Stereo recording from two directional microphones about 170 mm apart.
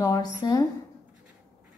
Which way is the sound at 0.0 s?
20° left (ahead or behind).